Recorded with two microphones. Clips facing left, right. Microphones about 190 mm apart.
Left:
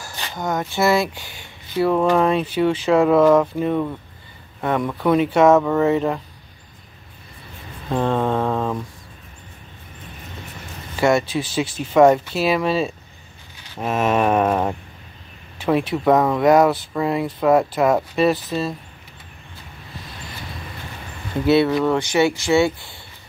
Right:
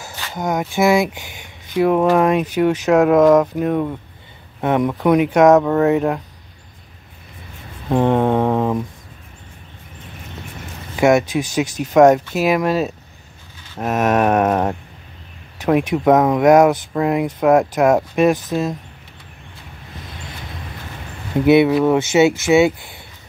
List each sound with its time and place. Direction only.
0.0 s speech: 20° right (ahead or behind)
7.9 s mantra: 15° right (ahead or behind)
11.0 s speech: 15° right (ahead or behind)
13.7 s a sound: 5° right (ahead or behind)
15.6 s speech: 15° right (ahead or behind)
21.4 s speech: 15° right (ahead or behind)